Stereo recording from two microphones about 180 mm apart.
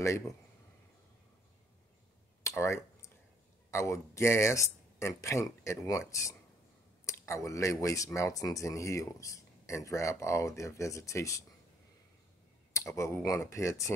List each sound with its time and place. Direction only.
2.4 s a sound: 15° left (ahead or behind)
3.7 s speech: 15° left (ahead or behind)
12.7 s speech: 15° left (ahead or behind)